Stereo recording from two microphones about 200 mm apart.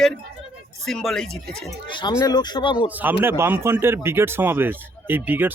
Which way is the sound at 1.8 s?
25° left (ahead or behind).